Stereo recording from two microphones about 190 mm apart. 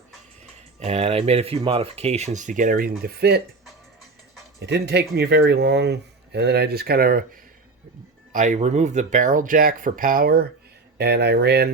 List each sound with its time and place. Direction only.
0.8 s speech: 35° right (ahead or behind); by 3.4 s 55° right (ahead or behind)
4.6 s speech: 60° right (ahead or behind)
8.3 s speech: 40° right (ahead or behind); by 11.7 s 60° right (ahead or behind)